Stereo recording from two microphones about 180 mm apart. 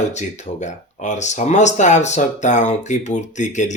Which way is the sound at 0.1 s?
40° left (ahead or behind).